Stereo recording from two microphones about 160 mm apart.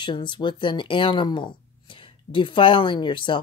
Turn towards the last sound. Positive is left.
turn(degrees=30)  # may be behind; listen again after turning